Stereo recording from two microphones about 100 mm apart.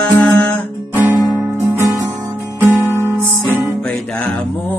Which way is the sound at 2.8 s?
25° right (ahead or behind).